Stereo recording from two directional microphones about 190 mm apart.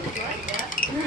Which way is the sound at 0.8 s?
50° left (ahead or behind).